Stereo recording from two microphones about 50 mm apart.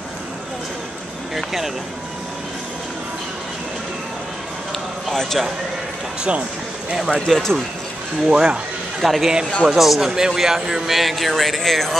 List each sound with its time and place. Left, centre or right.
1.3 s a man's voice: centre
5.1 s speech: centre
7.1 s speech: centre
8.3 s speech: centre
9.0 s a man's voice: centre